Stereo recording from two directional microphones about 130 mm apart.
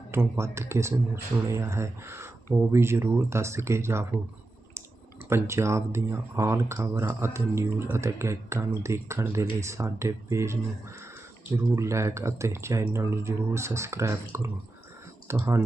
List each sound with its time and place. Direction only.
0.1 s speech: 20° right (ahead or behind)
5.3 s speech: 20° right (ahead or behind)